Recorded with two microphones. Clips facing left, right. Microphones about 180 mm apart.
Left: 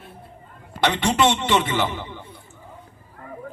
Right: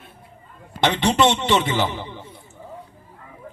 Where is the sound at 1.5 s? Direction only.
30° right (ahead or behind).